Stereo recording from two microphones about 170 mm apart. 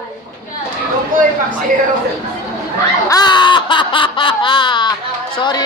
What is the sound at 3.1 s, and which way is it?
Snicker, 25° left (ahead or behind).